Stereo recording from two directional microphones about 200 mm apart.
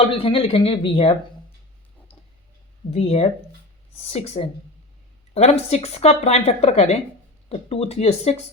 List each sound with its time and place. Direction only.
0.0 s speech: 25° left (ahead or behind)
2.9 s speech: 30° left (ahead or behind)